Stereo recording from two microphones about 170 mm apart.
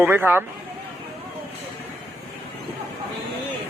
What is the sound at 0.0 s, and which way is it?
Speech, 10° right (ahead or behind).